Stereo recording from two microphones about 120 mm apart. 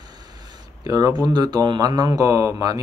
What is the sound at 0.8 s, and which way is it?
Speech, 30° right (ahead or behind).